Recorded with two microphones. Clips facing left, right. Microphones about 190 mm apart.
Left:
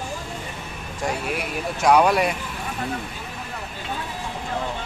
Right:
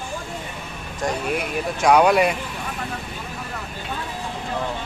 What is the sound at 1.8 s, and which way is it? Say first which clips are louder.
Speech: right 2 dB; centre (ahead or behind).